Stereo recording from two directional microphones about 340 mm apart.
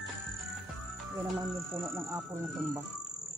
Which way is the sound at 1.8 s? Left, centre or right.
Centre.